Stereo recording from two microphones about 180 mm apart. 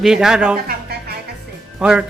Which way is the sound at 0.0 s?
5° right (ahead or behind).